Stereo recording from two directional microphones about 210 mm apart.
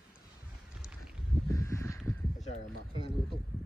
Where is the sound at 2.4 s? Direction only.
35° left (ahead or behind).